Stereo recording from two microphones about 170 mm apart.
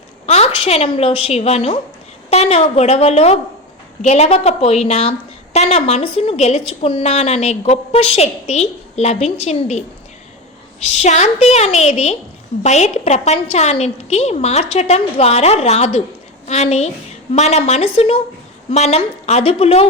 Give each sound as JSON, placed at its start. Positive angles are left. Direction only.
{"t": 0.3, "sound": "a woman's voice", "side_deg": 40}